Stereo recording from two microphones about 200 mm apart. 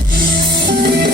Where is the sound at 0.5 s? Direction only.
55° right (ahead or behind).